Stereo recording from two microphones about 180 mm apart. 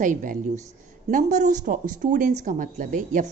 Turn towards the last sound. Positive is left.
turn(degrees=-45)  # may be behind; listen again after turning